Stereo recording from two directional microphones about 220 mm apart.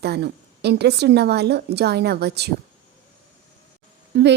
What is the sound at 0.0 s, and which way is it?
A woman's voice, 50° right (ahead or behind).